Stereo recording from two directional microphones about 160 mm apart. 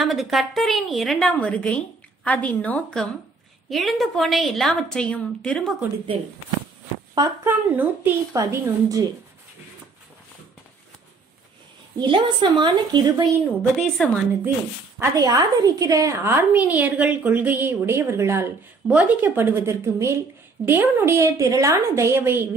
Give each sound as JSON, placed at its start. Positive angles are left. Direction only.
{"t": 0.0, "sound": "a woman's voice", "side_deg": 0}
{"t": 7.2, "sound": "a woman's voice", "side_deg": -10}
{"t": 12.0, "sound": "a woman's voice", "side_deg": -30}
{"t": 13.7, "sound": "a woman's voice", "side_deg": 5}
{"t": 15.0, "sound": "a woman's voice", "side_deg": -20}